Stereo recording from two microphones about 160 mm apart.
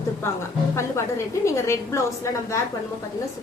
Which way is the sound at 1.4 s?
15° left (ahead or behind).